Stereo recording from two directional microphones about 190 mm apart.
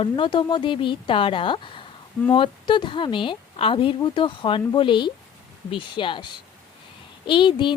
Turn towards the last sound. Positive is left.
turn(degrees=25)  # may be behind; listen again after turning